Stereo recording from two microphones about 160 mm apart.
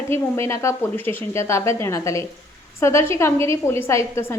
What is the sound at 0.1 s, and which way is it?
A woman's voice, 15° left (ahead or behind).